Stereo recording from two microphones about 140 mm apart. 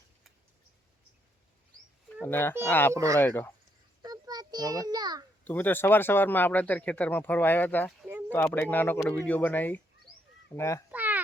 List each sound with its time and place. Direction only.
2.2 s speech: 15° left (ahead or behind)
2.9 s speech: 25° right (ahead or behind)
3.2 s speech: 15° left (ahead or behind)
4.0 s a sound: 30° right (ahead or behind)
5.5 s speech: 15° left (ahead or behind)
10.9 s a sound: 10° right (ahead or behind)